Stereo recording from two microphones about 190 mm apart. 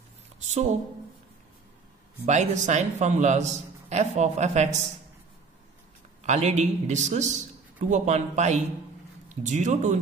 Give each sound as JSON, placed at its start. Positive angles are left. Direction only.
{"t": 0.5, "sound": "a man's voice", "side_deg": -40}
{"t": 2.2, "sound": "a man's voice", "side_deg": -40}
{"t": 6.2, "sound": "a man's voice", "side_deg": -35}